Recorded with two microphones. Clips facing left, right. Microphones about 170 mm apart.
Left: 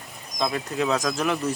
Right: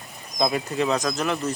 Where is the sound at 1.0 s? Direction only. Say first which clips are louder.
Even; 5° left (ahead or behind).